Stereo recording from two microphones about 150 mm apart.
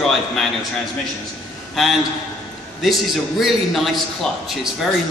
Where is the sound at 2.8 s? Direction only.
Centre (ahead or behind).